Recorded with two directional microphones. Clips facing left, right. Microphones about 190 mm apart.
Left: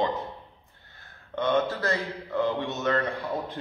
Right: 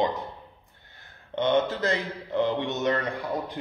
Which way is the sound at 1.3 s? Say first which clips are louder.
Right 2 dB; 20° right (ahead or behind).